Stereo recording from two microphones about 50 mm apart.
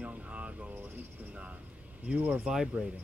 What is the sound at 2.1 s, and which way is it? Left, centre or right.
Speech, right.